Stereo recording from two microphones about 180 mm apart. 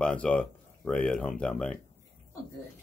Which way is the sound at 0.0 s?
5° left (ahead or behind).